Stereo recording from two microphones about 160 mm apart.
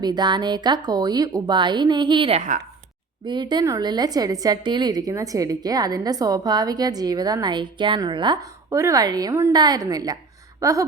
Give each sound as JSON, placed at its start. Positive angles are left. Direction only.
{"t": 0.0, "sound": "a woman's voice", "side_deg": -25}